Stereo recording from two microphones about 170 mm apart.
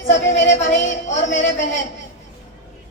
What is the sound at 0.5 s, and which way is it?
Music, 45° left (ahead or behind).